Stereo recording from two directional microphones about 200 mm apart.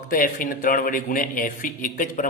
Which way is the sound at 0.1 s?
45° left (ahead or behind).